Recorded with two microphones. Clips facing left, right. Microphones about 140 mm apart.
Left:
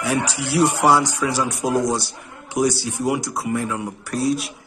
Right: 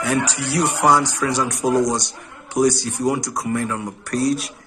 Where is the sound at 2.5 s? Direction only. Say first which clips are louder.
Right 2 dB; 10° left (ahead or behind).